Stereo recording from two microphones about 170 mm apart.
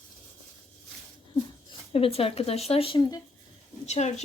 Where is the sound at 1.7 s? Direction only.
35° left (ahead or behind).